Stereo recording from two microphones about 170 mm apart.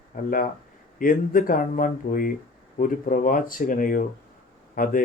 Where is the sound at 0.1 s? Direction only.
60° left (ahead or behind).